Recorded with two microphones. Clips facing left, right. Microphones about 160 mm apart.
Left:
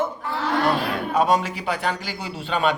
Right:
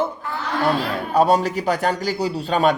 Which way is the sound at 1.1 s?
35° right (ahead or behind).